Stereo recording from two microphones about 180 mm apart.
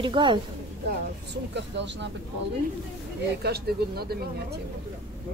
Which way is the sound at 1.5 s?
75° right (ahead or behind).